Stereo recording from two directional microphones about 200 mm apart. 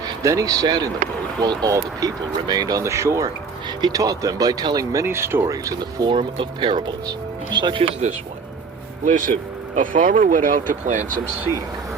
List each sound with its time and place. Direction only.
0.0 s speech: 15° right (ahead or behind)
9.0 s speech: 40° right (ahead or behind)